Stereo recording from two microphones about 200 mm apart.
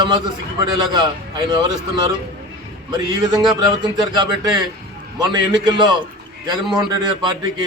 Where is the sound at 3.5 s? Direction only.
20° right (ahead or behind).